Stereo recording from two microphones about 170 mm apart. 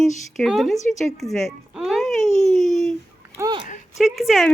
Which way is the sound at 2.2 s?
45° left (ahead or behind).